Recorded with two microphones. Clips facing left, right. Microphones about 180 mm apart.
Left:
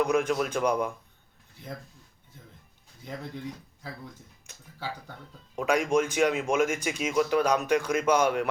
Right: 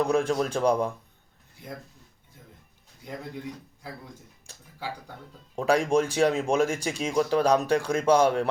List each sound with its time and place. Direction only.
0.0 s speech: 30° right (ahead or behind)
4.5 s speech: 35° right (ahead or behind)